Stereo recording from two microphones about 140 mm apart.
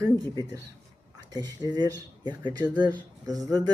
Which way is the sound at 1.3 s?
30° right (ahead or behind).